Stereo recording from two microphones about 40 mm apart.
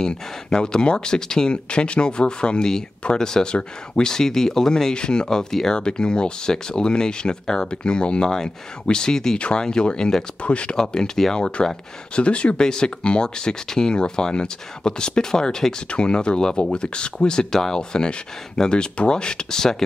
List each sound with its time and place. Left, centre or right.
0.0 s speech: centre
4.9 s speech: left
5.8 s speech: left
10.4 s speech: left
10.8 s speech: centre
12.6 s speech: centre